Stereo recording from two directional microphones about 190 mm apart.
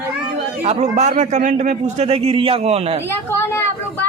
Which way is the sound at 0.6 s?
35° right (ahead or behind).